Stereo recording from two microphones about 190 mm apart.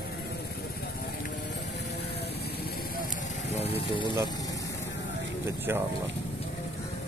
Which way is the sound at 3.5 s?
30° left (ahead or behind).